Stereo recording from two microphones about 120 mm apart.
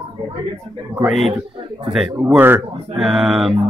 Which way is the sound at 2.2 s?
15° right (ahead or behind).